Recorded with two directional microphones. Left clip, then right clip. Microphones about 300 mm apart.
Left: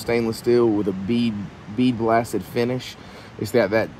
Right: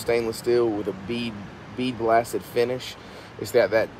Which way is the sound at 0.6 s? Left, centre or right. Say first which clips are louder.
Left 5 dB; left.